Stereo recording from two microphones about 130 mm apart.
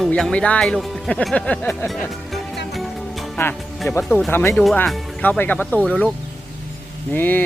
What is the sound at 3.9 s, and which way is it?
Speech, 15° left (ahead or behind).